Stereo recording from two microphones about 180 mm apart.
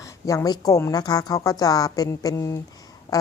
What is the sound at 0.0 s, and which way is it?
A woman's voice, 20° left (ahead or behind).